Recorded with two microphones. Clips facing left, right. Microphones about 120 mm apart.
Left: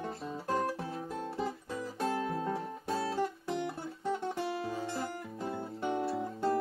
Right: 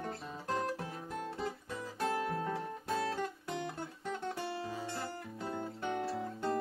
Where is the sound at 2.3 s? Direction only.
15° left (ahead or behind).